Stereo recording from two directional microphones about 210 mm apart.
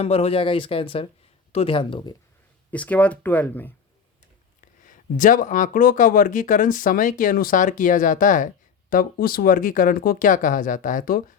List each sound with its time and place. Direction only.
0.0 s speech: 30° left (ahead or behind)
2.7 s speech: 5° left (ahead or behind)
4.8 s speech: 40° left (ahead or behind)